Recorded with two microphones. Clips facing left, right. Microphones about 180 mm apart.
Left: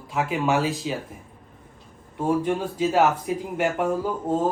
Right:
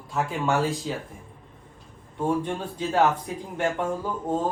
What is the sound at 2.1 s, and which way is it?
Speech, 5° left (ahead or behind).